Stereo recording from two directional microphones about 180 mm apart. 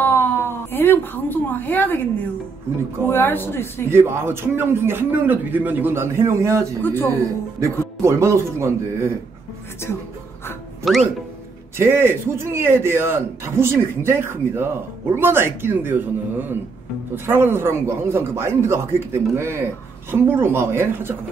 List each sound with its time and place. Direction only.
0.0 s a sound: 15° left (ahead or behind)
2.7 s speech: 15° right (ahead or behind)
3.1 s speech: 10° left (ahead or behind)
3.9 s speech: 15° right (ahead or behind)
6.8 s speech: 10° left (ahead or behind)
8.0 s speech: 15° right (ahead or behind)
10.8 s speech: centre (ahead or behind)
11.8 s speech: 15° right (ahead or behind)